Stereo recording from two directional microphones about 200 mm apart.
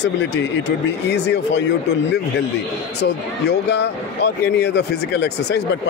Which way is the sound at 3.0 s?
60° left (ahead or behind).